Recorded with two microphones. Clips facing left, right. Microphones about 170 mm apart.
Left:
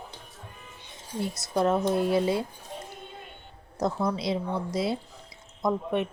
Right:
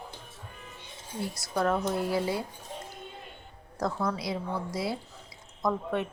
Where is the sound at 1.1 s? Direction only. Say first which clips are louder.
Left 3 dB; 20° left (ahead or behind).